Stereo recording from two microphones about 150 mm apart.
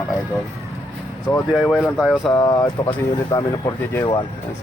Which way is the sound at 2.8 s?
25° left (ahead or behind).